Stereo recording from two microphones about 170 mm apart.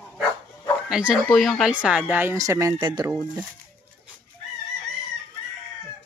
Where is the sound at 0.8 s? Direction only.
5° right (ahead or behind); by 3.1 s 25° right (ahead or behind).